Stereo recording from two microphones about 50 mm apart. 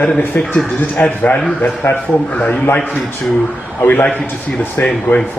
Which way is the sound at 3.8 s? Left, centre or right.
Left.